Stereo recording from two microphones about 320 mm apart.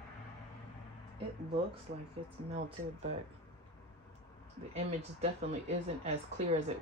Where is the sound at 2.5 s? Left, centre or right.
Right.